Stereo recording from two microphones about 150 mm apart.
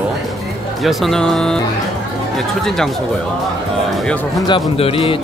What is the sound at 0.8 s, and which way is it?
Speech, centre (ahead or behind).